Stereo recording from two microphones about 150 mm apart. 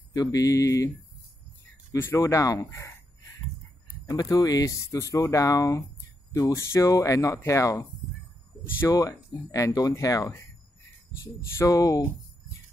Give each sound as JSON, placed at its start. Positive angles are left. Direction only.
{"t": 0.1, "sound": "speech", "side_deg": 25}
{"t": 4.1, "sound": "speech", "side_deg": 25}
{"t": 11.5, "sound": "speech", "side_deg": 20}